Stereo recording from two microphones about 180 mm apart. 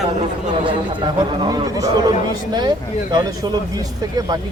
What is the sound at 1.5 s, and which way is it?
Speech, 20° right (ahead or behind).